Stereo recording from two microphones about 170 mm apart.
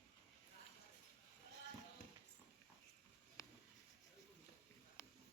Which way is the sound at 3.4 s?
20° left (ahead or behind).